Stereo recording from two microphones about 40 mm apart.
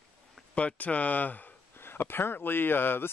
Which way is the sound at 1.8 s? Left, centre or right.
Left.